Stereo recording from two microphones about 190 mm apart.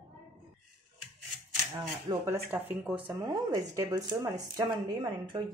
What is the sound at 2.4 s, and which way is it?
A woman's voice, 10° right (ahead or behind).